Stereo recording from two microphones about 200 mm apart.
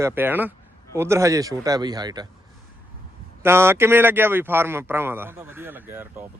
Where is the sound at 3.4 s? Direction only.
10° right (ahead or behind).